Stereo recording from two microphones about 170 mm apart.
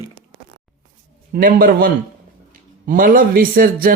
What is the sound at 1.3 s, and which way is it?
Speech, 60° right (ahead or behind).